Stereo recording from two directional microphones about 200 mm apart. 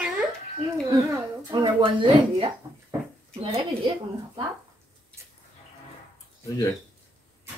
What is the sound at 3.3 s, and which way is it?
Speech, 30° right (ahead or behind).